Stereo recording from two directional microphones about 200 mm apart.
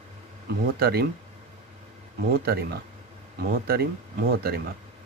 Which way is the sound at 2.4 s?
50° right (ahead or behind).